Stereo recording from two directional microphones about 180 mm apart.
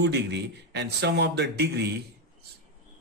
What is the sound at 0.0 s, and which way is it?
Speech, 70° right (ahead or behind).